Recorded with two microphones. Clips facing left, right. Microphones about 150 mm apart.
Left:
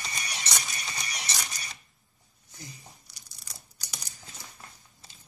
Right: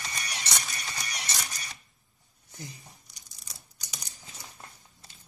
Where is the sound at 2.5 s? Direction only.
20° right (ahead or behind).